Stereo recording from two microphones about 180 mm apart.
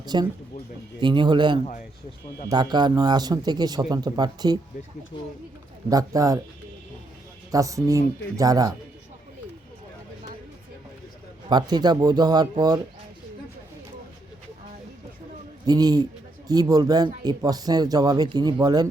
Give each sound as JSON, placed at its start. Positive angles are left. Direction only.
{"t": 0.0, "sound": "speech", "side_deg": -25}
{"t": 5.9, "sound": "speech", "side_deg": -20}
{"t": 7.5, "sound": "speech", "side_deg": -20}
{"t": 11.4, "sound": "speech", "side_deg": -25}
{"t": 15.6, "sound": "speech", "side_deg": -20}